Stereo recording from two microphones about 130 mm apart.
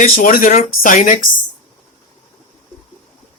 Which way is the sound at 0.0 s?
90° left.